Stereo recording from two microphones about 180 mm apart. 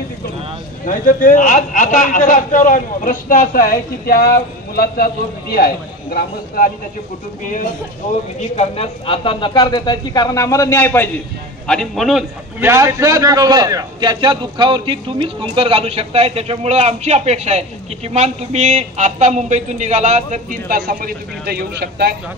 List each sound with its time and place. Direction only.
0.8 s a man's voice: 45° left (ahead or behind)
8.4 s a man's voice: 35° left (ahead or behind); by 12.6 s centre (ahead or behind)
12.6 s a man's voice: 15° right (ahead or behind); by 22.1 s 65° right (ahead or behind)